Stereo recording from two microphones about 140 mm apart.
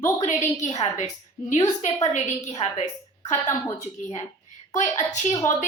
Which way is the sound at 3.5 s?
20° left (ahead or behind).